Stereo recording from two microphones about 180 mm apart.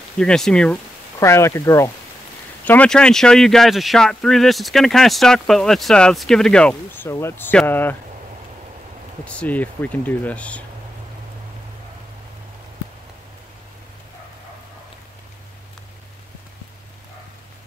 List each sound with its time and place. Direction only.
0.2 s speech: 5° left (ahead or behind)
1.2 s speech: 15° left (ahead or behind)
9.2 s speech: 5° left (ahead or behind)